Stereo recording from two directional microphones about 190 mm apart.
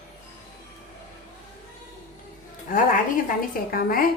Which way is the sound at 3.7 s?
50° left (ahead or behind).